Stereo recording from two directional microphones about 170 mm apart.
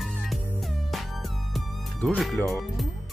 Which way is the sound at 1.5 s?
Centre (ahead or behind).